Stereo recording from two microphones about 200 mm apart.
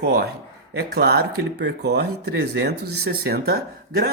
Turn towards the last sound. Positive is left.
turn(degrees=-50)  # may be behind; listen again after turning